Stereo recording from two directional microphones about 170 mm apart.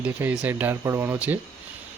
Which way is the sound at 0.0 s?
10° right (ahead or behind).